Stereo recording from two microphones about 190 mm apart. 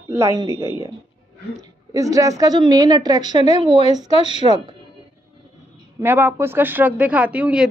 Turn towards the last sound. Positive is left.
turn(degrees=-5)  # may be behind; listen again after turning